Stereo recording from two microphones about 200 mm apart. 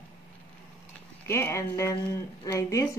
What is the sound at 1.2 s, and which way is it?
Speech, 15° left (ahead or behind).